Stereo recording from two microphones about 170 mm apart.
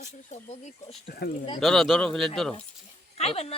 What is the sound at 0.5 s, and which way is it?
Speech, 35° left (ahead or behind).